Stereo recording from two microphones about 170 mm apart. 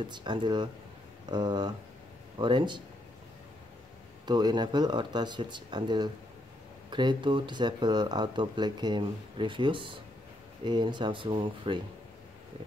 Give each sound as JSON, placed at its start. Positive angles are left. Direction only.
{"t": 0.0, "sound": "speech", "side_deg": -25}
{"t": 4.3, "sound": "speech", "side_deg": -25}